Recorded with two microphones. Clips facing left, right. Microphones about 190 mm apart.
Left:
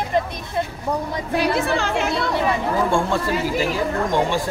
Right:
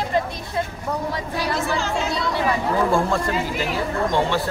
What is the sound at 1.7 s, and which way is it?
Speech, 60° left (ahead or behind).